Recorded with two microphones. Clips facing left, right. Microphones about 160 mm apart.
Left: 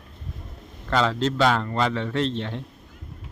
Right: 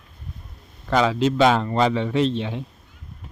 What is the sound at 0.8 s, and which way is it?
Speech, 10° right (ahead or behind).